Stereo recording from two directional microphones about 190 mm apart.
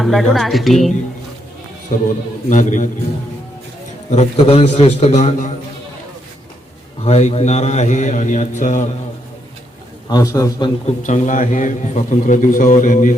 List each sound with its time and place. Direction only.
0.0 s a woman's voice: centre (ahead or behind)
2.5 s a man's voice: 40° left (ahead or behind)
4.1 s a man's voice: 35° left (ahead or behind)
7.0 s a man's voice: 35° left (ahead or behind)
10.1 s a man's voice: 20° left (ahead or behind)
10.8 s a man's voice: 40° left (ahead or behind)